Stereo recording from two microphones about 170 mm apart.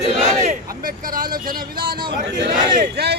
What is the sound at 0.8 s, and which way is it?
Speech, 55° right (ahead or behind).